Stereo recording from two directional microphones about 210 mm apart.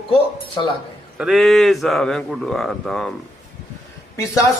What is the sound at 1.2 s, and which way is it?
Speech, centre (ahead or behind).